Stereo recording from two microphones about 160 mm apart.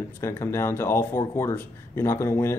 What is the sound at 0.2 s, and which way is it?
Speech, 15° left (ahead or behind).